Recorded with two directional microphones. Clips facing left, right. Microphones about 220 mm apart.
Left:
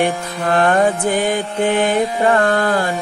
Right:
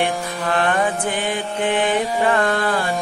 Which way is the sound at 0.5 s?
45° left (ahead or behind).